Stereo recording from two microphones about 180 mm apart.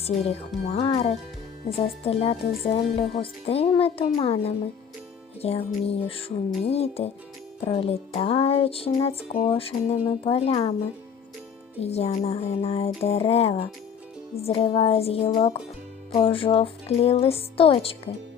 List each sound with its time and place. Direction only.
0.0 s music: 35° left (ahead or behind)
11.8 s music: 35° left (ahead or behind)